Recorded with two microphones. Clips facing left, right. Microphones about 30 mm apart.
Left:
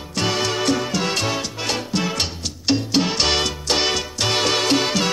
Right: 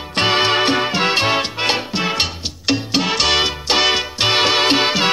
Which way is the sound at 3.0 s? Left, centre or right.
Centre.